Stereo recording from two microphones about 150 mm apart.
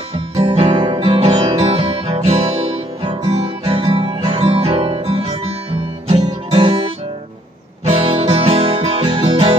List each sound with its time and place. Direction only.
0.4 s guitar: 35° right (ahead or behind)
6.0 s music: 35° right (ahead or behind)